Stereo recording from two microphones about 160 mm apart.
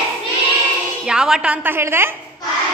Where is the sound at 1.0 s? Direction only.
5° right (ahead or behind).